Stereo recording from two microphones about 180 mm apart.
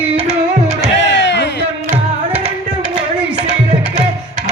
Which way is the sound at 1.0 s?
80° left.